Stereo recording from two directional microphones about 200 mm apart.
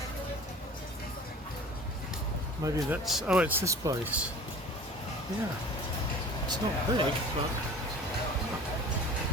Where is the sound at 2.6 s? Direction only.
15° right (ahead or behind).